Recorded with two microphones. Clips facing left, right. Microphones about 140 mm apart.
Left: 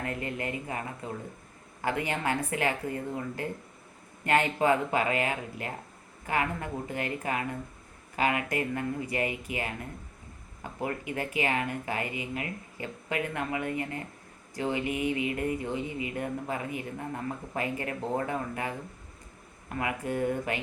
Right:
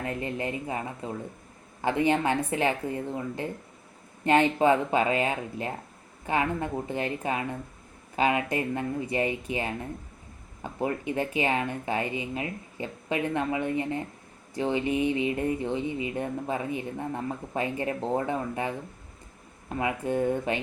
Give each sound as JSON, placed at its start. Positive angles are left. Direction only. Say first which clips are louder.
{"t": 0.0, "sound": "speech", "louder": "right 3 dB", "side_deg": -25}